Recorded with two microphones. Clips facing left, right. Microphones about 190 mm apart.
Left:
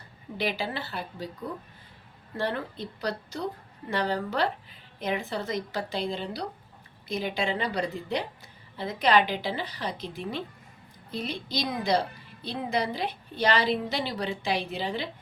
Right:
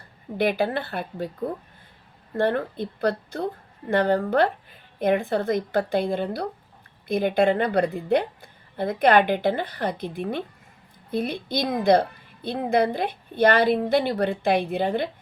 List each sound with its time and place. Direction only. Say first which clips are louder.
0.3 s a woman's voice: right 8 dB; 55° right (ahead or behind)